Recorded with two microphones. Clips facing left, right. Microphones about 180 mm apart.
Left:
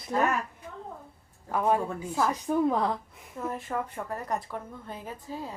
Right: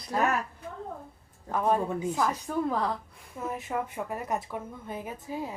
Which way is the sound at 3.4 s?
5° right (ahead or behind).